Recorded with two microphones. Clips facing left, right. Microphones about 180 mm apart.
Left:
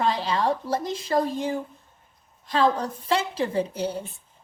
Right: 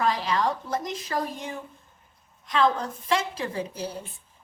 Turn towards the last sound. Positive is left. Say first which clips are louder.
# left 5 dB
turn(degrees=30)  # may be behind; listen again after turning